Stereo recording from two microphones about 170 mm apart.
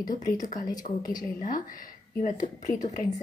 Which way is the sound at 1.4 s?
55° left (ahead or behind).